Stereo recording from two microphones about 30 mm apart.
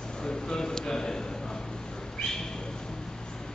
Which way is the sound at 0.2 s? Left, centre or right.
Left.